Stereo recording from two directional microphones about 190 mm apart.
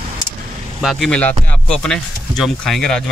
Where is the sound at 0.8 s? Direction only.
5° left (ahead or behind).